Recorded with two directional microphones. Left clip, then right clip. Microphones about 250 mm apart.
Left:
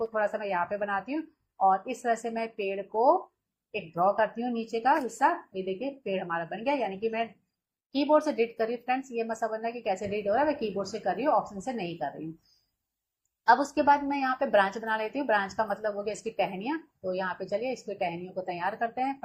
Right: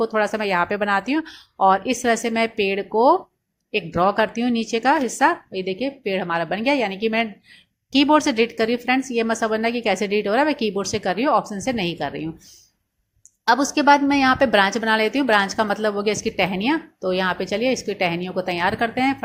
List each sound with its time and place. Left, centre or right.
0.0 s a woman's voice: right
13.4 s a woman's voice: right